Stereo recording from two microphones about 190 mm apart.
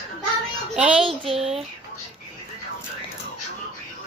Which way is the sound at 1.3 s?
30° right (ahead or behind).